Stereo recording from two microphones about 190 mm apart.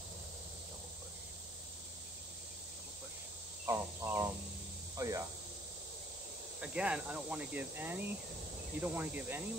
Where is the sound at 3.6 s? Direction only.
15° right (ahead or behind).